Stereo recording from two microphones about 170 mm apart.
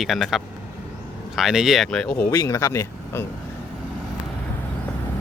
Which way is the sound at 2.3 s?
20° left (ahead or behind).